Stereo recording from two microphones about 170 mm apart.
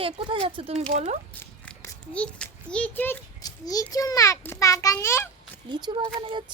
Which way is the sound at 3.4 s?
20° left (ahead or behind).